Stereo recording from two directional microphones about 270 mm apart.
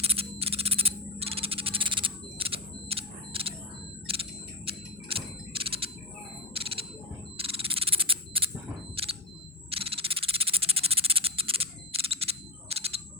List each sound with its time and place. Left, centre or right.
0.0 s a sound: right
9.0 s single-lens reflex camera: right
9.6 s cricket: right
12.7 s single-lens reflex camera: right